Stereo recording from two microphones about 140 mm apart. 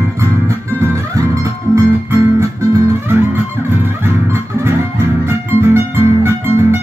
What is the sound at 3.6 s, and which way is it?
Music, 20° right (ahead or behind).